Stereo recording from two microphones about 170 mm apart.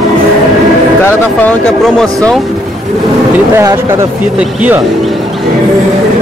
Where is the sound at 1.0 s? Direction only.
10° left (ahead or behind).